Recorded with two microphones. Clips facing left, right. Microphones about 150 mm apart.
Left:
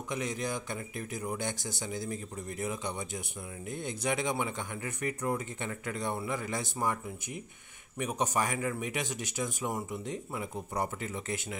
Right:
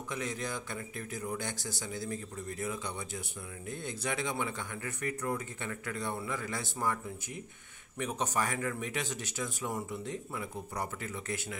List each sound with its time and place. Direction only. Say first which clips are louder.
0.1 s speech: left 3 dB; 15° left (ahead or behind)
8.0 s speech: left 2 dB; 15° left (ahead or behind)